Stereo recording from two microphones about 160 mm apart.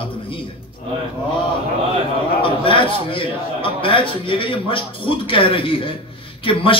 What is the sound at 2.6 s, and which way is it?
A man's voice, 35° left (ahead or behind).